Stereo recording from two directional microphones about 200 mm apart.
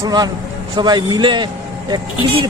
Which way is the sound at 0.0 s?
20° right (ahead or behind).